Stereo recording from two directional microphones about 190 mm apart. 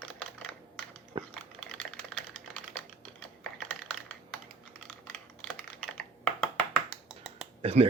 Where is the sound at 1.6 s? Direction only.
5° left (ahead or behind).